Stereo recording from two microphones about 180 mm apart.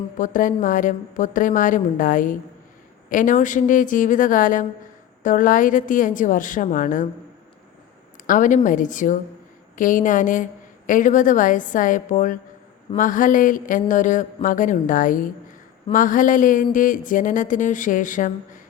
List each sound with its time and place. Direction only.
0.2 s speech: 45° left (ahead or behind)
8.3 s speech: 45° left (ahead or behind)